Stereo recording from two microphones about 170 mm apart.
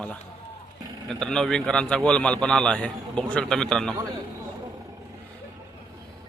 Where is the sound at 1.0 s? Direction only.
5° left (ahead or behind).